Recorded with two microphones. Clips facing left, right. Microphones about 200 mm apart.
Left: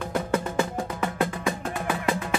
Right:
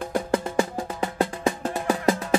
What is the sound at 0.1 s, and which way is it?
Music, 30° right (ahead or behind).